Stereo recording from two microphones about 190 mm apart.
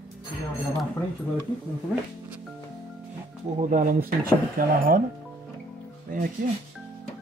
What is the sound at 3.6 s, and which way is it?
Speech, 40° right (ahead or behind).